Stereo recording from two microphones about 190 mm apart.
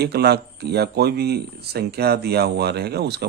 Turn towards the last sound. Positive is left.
turn(degrees=-60)  # may be behind; listen again after turning